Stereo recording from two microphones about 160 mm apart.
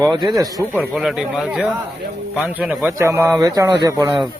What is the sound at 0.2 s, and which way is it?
Speech, 25° right (ahead or behind).